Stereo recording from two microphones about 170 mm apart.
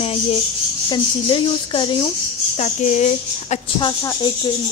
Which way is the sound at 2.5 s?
45° left (ahead or behind).